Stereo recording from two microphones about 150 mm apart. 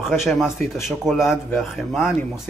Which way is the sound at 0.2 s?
Centre (ahead or behind).